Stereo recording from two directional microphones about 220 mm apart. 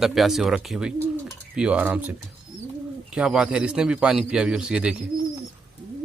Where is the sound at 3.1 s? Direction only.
Centre (ahead or behind).